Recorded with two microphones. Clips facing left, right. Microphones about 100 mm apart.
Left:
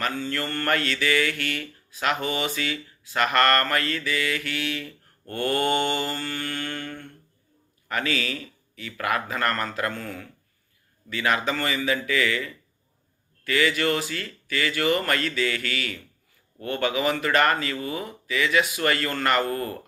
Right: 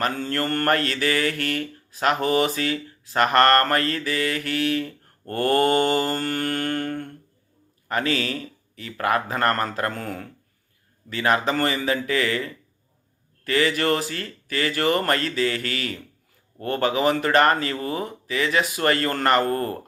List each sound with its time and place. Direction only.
0.0 s mantra: 45° right (ahead or behind)
7.9 s mantra: 35° right (ahead or behind)